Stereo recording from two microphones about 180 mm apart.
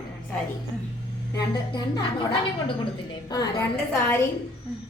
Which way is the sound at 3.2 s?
20° left (ahead or behind).